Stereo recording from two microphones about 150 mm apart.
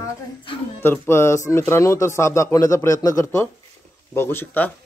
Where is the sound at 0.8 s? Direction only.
15° left (ahead or behind).